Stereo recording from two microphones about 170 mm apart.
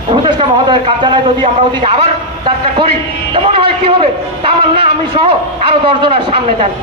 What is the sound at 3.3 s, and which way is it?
A man's voice, 35° right (ahead or behind).